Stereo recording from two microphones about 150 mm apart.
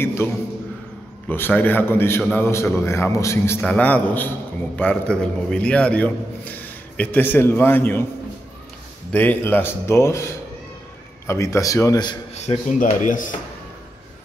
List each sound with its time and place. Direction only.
0.0 s a man's voice: 15° left (ahead or behind)
1.3 s a man's voice: 10° left (ahead or behind)
3.6 s a man's voice: 10° left (ahead or behind)
9.1 s a man's voice: 10° left (ahead or behind)
12.7 s speech: 60° left (ahead or behind)